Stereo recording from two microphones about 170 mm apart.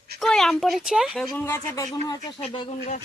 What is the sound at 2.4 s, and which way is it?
Speech, 30° left (ahead or behind).